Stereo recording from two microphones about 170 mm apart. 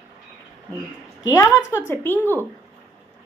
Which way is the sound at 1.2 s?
20° left (ahead or behind).